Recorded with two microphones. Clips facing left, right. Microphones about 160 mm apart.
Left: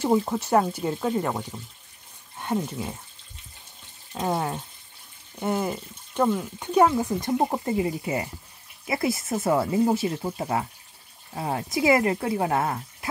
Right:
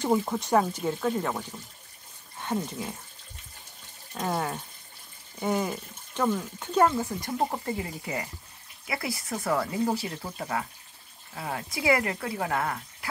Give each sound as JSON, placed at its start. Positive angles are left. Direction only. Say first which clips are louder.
{"t": 0.0, "sound": "speech", "louder": "left 3 dB", "side_deg": 5}
{"t": 2.4, "sound": "speech", "louder": "left 3 dB", "side_deg": 10}
{"t": 4.1, "sound": "speech", "louder": "left 4 dB", "side_deg": 20}
{"t": 5.4, "sound": "speech", "louder": "left 2 dB", "side_deg": 10}
{"t": 7.2, "sound": "speech", "louder": "left 5 dB", "side_deg": 20}